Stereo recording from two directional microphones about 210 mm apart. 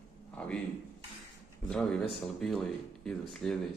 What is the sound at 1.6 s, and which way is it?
Speech, 5° left (ahead or behind).